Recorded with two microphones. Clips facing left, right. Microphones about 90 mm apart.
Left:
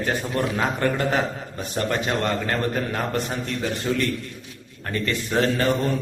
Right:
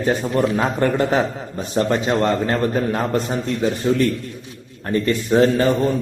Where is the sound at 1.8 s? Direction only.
25° right (ahead or behind).